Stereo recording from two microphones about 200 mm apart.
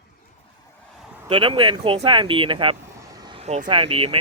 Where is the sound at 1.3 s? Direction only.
25° right (ahead or behind).